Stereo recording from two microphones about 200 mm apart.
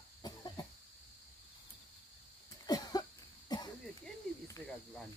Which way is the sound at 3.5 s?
20° left (ahead or behind).